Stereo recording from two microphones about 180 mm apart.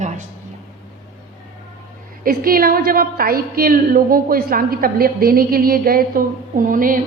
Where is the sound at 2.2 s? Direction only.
55° right (ahead or behind).